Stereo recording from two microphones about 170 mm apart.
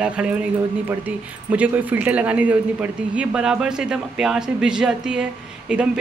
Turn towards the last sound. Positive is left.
turn(degrees=-5)  # may be behind; listen again after turning